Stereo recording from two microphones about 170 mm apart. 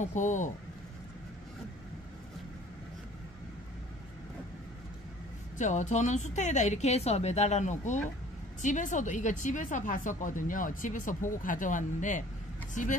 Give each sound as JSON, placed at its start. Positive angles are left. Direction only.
{"t": 0.0, "sound": "speech", "side_deg": 45}
{"t": 5.6, "sound": "speech", "side_deg": 45}